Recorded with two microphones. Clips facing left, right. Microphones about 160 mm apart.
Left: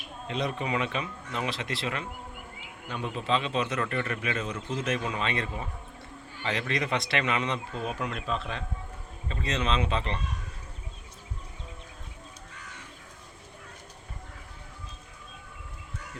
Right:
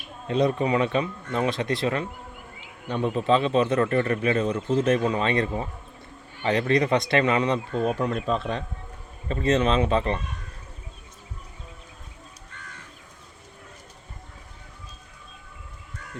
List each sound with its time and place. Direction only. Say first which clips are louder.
0.3 s a man's voice: right 8 dB; 35° right (ahead or behind)